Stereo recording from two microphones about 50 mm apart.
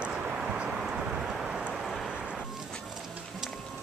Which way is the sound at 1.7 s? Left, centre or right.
Centre.